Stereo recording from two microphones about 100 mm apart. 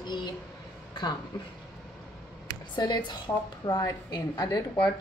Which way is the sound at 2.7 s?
45° left (ahead or behind).